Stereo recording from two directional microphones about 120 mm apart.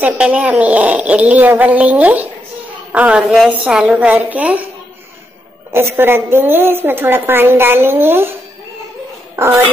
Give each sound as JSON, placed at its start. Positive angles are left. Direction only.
{"t": 0.0, "sound": "speech", "side_deg": -10}
{"t": 5.7, "sound": "a woman's voice", "side_deg": -20}